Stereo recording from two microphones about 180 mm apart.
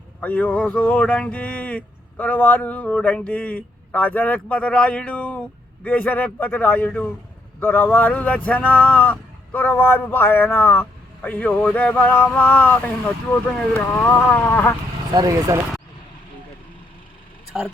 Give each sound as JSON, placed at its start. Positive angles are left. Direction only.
{"t": 0.2, "sound": "speech", "side_deg": 10}
{"t": 15.1, "sound": "speech", "side_deg": -20}
{"t": 17.5, "sound": "a man's voice", "side_deg": -5}